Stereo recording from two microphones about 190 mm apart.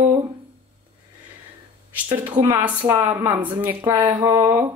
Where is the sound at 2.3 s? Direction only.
15° right (ahead or behind).